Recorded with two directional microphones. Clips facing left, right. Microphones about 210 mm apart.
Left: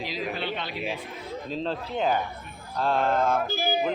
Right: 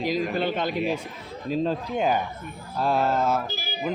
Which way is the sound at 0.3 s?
45° right (ahead or behind).